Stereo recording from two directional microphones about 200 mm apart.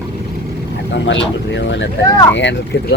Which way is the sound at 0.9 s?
65° left (ahead or behind).